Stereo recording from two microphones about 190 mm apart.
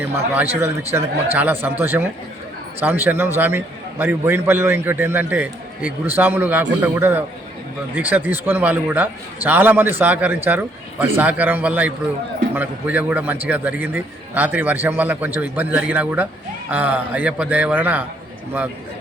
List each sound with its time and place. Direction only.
0.0 s a man's voice: 10° right (ahead or behind)